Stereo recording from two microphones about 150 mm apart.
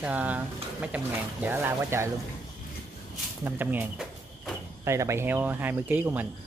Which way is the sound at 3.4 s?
15° right (ahead or behind).